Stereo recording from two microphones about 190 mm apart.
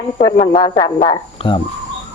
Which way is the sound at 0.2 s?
20° left (ahead or behind).